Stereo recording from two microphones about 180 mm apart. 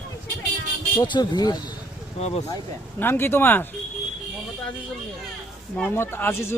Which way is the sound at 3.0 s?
10° left (ahead or behind).